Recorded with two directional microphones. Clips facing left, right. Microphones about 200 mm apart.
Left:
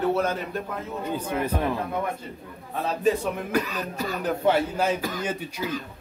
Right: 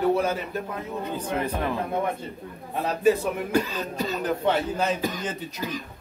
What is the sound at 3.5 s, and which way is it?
Speech, 25° right (ahead or behind).